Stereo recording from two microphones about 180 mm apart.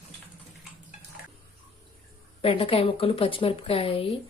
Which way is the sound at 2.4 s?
30° left (ahead or behind).